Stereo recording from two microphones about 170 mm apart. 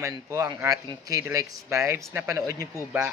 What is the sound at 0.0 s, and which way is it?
Speech, 15° right (ahead or behind).